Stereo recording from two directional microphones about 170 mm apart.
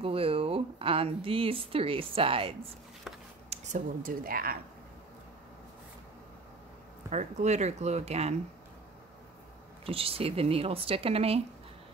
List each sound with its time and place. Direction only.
0.0 s speech: 35° right (ahead or behind)
3.4 s speech: 45° right (ahead or behind)
7.1 s speech: 40° right (ahead or behind)
9.8 s speech: 35° right (ahead or behind)